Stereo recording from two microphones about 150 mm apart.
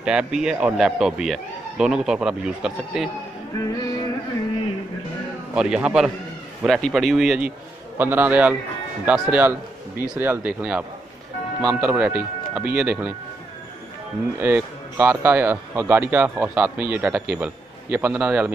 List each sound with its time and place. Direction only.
0.0 s speech: 5° right (ahead or behind)
3.5 s music: 25° left (ahead or behind)
5.5 s a man's voice: 5° right (ahead or behind)
14.4 s speech: 15° right (ahead or behind)